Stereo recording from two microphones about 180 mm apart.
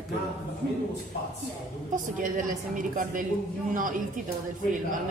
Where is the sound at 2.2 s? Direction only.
45° right (ahead or behind).